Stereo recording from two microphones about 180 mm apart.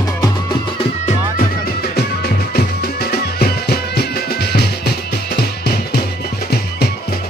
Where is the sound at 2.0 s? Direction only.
60° left (ahead or behind).